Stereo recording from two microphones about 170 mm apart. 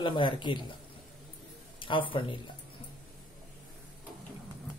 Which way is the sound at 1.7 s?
30° left (ahead or behind).